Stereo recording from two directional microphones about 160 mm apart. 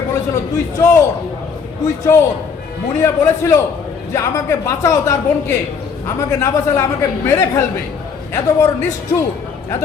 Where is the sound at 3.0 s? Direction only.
20° left (ahead or behind).